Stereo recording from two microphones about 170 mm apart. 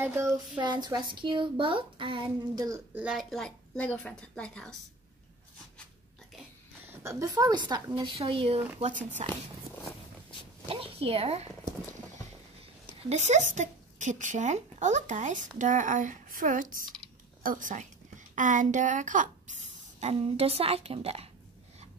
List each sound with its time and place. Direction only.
0.0 s a sound: 15° right (ahead or behind)
0.6 s speech: 25° right (ahead or behind)
2.9 s a woman's voice: 5° right (ahead or behind)
6.9 s speech: 15° right (ahead or behind); by 9.0 s 40° right (ahead or behind)
10.7 s a woman's voice: 35° right (ahead or behind)
13.1 s a woman's voice: 40° right (ahead or behind)